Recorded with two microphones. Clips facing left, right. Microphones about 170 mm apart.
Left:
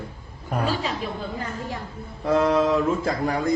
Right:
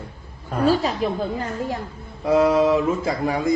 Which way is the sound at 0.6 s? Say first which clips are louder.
Right 8 dB; 40° right (ahead or behind).